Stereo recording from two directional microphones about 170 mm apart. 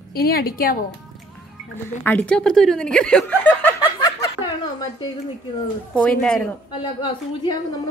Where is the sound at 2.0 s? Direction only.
10° left (ahead or behind).